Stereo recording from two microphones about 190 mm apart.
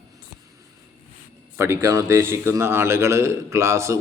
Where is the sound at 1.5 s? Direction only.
15° right (ahead or behind).